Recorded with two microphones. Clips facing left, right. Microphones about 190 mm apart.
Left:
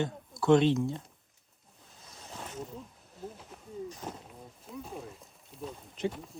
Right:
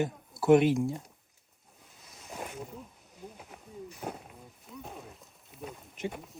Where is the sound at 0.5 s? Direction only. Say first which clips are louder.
Right 1 dB; 15° right (ahead or behind).